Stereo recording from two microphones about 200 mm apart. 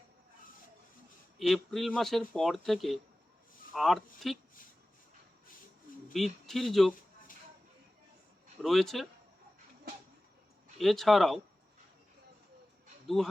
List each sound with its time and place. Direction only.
1.4 s speech: centre (ahead or behind)
6.1 s speech: centre (ahead or behind)
8.6 s speech: centre (ahead or behind)
10.8 s speech: centre (ahead or behind)